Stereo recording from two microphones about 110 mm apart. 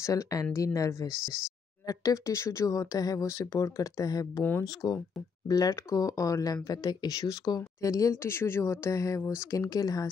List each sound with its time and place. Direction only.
0.0 s speech: 30° left (ahead or behind)